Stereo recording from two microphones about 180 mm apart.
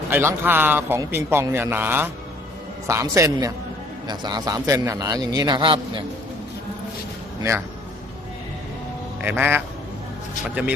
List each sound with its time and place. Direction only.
0.1 s a man's voice: 10° right (ahead or behind); by 5.8 s 25° right (ahead or behind)
9.2 s a man's voice: 10° right (ahead or behind)